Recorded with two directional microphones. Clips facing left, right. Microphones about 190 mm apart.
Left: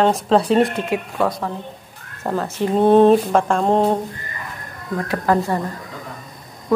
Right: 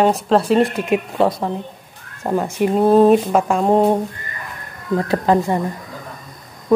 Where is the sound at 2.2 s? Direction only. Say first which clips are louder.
Right 3 dB; 15° right (ahead or behind).